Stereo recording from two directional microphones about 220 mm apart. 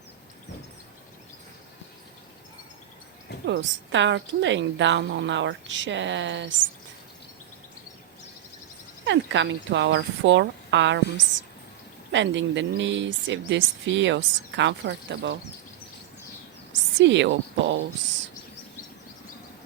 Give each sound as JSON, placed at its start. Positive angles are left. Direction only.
{"t": 3.4, "sound": "speech", "side_deg": -55}
{"t": 9.0, "sound": "speech", "side_deg": -55}
{"t": 12.1, "sound": "speech", "side_deg": -55}
{"t": 17.0, "sound": "speech", "side_deg": -55}